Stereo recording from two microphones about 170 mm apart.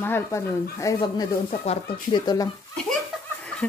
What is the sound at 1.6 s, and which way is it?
Speech, 40° left (ahead or behind).